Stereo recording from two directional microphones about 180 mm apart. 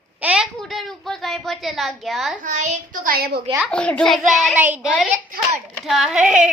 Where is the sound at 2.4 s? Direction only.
45° right (ahead or behind).